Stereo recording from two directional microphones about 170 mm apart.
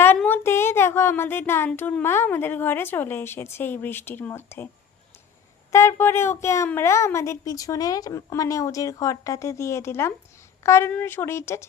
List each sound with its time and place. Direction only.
0.0 s a woman's voice: 10° left (ahead or behind)
5.7 s a woman's voice: 15° left (ahead or behind)